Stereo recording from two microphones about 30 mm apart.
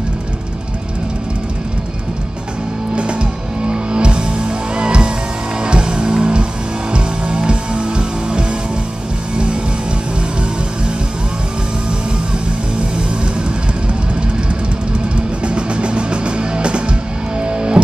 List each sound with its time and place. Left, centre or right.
3.7 s music: right
15.1 s music: right